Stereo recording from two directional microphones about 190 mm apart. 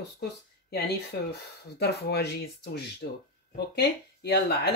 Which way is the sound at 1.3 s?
60° left (ahead or behind).